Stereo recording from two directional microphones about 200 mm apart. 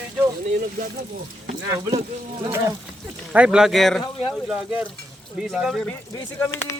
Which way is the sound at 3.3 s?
5° right (ahead or behind).